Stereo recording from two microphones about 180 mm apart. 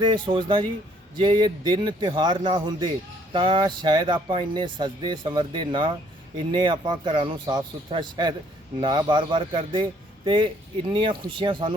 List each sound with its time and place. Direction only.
0.0 s speech: 25° right (ahead or behind)